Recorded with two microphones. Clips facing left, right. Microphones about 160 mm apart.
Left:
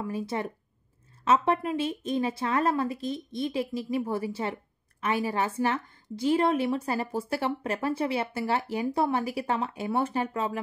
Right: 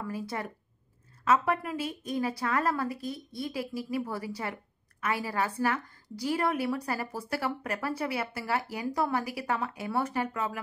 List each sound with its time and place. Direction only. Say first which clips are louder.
0.0 s a woman's voice: left 4 dB; 25° left (ahead or behind)